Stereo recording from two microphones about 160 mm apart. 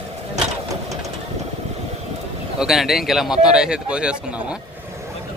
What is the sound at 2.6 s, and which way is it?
Speech, centre (ahead or behind).